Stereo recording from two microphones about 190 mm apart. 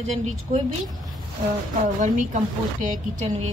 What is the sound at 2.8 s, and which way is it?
Speech, 40° right (ahead or behind).